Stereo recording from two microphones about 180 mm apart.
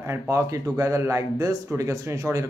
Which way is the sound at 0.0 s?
15° right (ahead or behind).